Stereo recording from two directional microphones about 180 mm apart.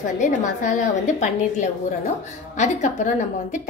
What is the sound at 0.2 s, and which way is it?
A woman's voice, 45° left (ahead or behind).